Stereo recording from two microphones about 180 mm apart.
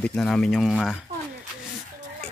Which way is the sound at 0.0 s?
5° left (ahead or behind).